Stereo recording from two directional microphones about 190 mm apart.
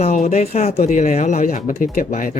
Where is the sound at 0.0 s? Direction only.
35° left (ahead or behind).